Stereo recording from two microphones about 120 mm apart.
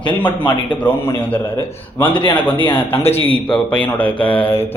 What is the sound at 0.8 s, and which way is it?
Speech, 15° left (ahead or behind).